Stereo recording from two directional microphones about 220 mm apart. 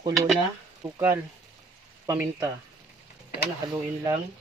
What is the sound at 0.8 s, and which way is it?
Speech, 15° right (ahead or behind).